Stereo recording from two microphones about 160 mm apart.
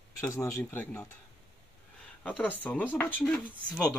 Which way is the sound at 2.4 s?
10° left (ahead or behind).